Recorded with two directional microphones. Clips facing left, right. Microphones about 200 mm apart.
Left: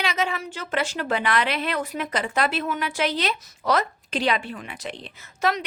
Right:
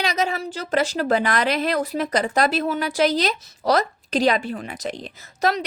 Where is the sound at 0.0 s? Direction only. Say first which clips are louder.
Right 3 dB; 40° right (ahead or behind).